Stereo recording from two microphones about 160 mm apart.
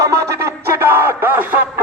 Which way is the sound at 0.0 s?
20° right (ahead or behind).